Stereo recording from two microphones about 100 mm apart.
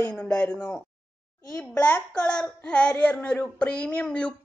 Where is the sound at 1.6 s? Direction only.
15° left (ahead or behind).